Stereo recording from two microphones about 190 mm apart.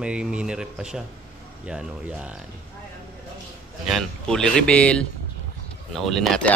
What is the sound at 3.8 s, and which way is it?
A man's voice, centre (ahead or behind).